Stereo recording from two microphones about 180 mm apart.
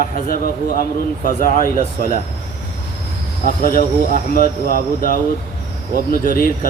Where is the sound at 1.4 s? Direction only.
50° left (ahead or behind).